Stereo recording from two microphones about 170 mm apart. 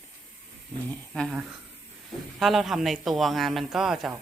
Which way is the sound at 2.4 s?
Centre (ahead or behind).